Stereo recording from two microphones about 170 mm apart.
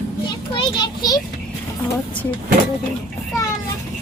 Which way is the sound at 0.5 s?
25° left (ahead or behind).